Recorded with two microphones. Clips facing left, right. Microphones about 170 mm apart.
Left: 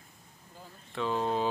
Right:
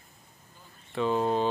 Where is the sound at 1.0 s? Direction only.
5° right (ahead or behind).